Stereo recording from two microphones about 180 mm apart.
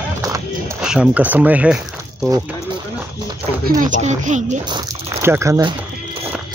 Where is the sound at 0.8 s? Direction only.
5° right (ahead or behind).